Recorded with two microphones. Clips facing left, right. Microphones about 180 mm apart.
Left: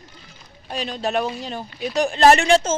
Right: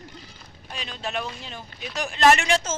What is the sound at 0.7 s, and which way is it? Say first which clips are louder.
Speech: left 8 dB; 40° left (ahead or behind).